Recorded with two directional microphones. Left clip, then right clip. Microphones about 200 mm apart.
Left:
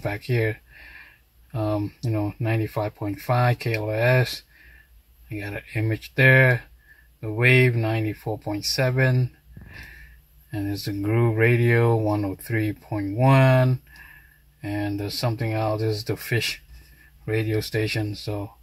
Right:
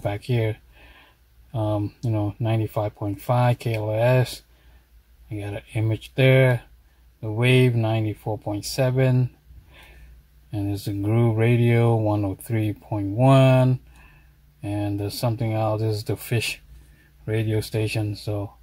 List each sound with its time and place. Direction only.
0.0 s speech: 25° right (ahead or behind)
5.4 s speech: 30° right (ahead or behind)
10.5 s speech: 30° right (ahead or behind)
14.6 s speech: 25° right (ahead or behind)
17.5 s speech: 30° right (ahead or behind)